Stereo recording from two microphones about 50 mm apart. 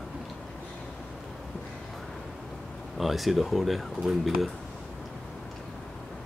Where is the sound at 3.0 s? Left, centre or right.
Centre.